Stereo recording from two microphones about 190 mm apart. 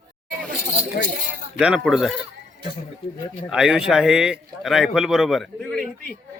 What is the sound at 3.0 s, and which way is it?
Speech, 30° left (ahead or behind).